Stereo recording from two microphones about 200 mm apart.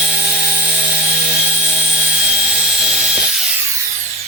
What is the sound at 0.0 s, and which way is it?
Helicopter, 5° right (ahead or behind).